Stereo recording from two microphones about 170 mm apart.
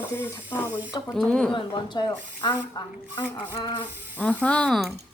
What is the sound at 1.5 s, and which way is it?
A woman's voice, 25° left (ahead or behind).